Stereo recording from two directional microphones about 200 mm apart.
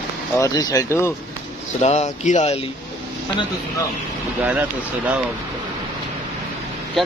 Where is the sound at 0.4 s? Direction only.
20° left (ahead or behind).